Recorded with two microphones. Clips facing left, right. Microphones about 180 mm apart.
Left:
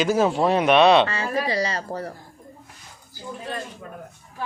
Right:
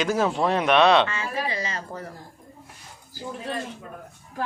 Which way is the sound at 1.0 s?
35° left (ahead or behind).